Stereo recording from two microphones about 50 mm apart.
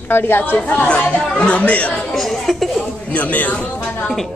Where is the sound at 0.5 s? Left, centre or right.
Left.